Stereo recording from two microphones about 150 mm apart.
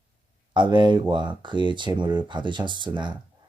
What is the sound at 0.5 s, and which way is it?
Speech, 30° right (ahead or behind).